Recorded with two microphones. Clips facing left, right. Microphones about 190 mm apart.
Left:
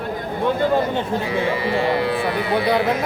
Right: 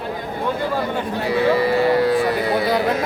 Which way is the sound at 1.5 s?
40° right (ahead or behind).